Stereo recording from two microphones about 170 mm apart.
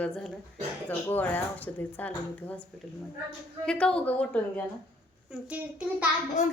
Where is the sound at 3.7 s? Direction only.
5° left (ahead or behind).